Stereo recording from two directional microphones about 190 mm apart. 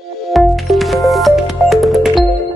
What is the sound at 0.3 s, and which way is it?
Music, centre (ahead or behind).